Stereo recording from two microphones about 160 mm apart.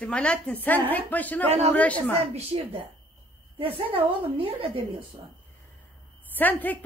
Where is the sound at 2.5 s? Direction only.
35° right (ahead or behind).